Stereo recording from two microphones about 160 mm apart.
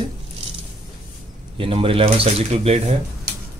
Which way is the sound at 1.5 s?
35° right (ahead or behind).